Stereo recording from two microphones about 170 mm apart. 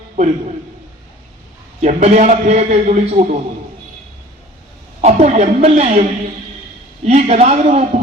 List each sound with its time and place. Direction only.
0.2 s a man's voice: 45° right (ahead or behind)
1.8 s a man's voice: 45° right (ahead or behind)
4.9 s a woman's voice: 40° right (ahead or behind)
7.1 s a woman's voice: 40° right (ahead or behind)